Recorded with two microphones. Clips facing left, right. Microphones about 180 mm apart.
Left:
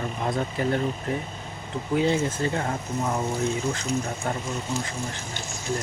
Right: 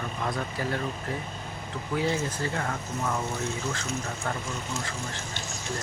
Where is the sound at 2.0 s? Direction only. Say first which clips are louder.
Left 5 dB; 20° left (ahead or behind).